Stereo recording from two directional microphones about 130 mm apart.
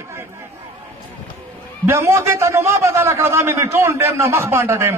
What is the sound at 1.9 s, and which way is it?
A man's voice, 20° right (ahead or behind).